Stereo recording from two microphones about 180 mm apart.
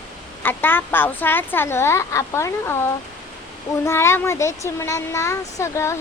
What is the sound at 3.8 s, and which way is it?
Speech, 15° left (ahead or behind).